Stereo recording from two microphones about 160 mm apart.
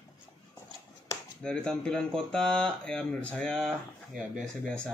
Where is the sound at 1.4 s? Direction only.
5° left (ahead or behind).